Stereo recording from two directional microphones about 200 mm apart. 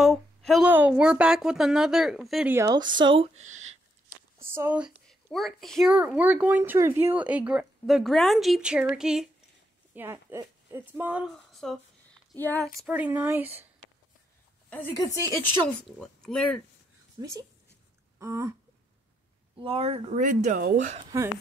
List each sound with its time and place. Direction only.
0.0 s speech: centre (ahead or behind)
2.5 s speech: 15° right (ahead or behind); by 3.8 s 35° right (ahead or behind)
4.4 s speech: 10° right (ahead or behind)
12.1 s a sound: 5° left (ahead or behind)
12.8 s speech: 5° right (ahead or behind)
14.7 s a woman's voice: 10° left (ahead or behind)
17.2 s a sound: 15° right (ahead or behind)
18.2 s speech: 15° right (ahead or behind)
19.6 s speech: 30° right (ahead or behind)